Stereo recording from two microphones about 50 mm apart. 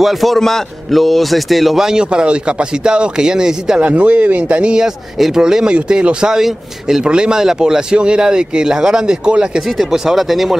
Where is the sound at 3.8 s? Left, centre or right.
Right.